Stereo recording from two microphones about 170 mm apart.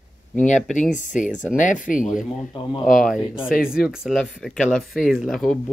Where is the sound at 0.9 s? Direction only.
50° left (ahead or behind).